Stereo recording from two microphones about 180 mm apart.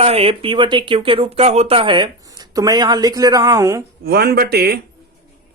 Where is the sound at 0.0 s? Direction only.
35° right (ahead or behind); by 3.8 s 20° right (ahead or behind).